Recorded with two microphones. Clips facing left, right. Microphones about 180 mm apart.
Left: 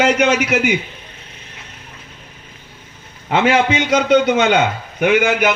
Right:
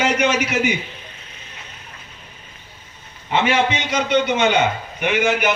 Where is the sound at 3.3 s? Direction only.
90° left.